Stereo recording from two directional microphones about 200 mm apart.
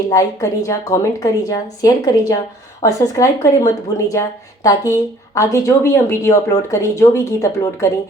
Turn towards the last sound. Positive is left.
turn(degrees=15)  # may be behind; listen again after turning